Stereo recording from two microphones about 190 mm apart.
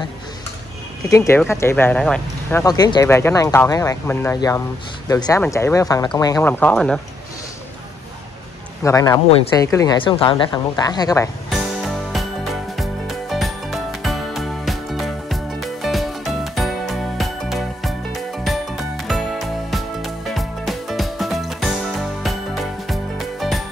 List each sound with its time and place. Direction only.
1.0 s speech: 15° left (ahead or behind)
2.6 s speech: 20° left (ahead or behind); by 7.0 s 5° left (ahead or behind)
8.8 s a woman's voice: 15° left (ahead or behind)
11.8 s music: centre (ahead or behind)